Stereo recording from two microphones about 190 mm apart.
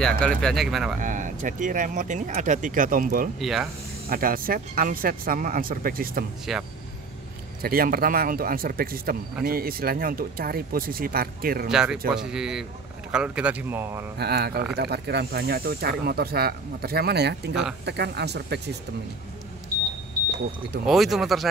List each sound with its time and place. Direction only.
0.2 s speech: 5° left (ahead or behind)
1.0 s speech: 45° right (ahead or behind)
3.3 s speech: centre (ahead or behind)
4.1 s speech: 50° right (ahead or behind)
6.5 s speech: centre (ahead or behind)
7.6 s speech: 50° right (ahead or behind)
11.7 s speech: 5° right (ahead or behind)
14.1 s speech: 55° right (ahead or behind)
20.8 s speech: centre (ahead or behind)